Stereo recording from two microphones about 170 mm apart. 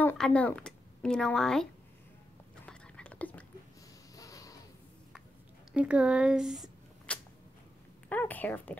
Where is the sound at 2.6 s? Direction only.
5° left (ahead or behind).